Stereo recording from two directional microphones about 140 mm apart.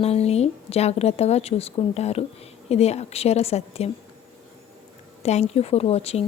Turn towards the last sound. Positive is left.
turn(degrees=45)  # may be behind; listen again after turning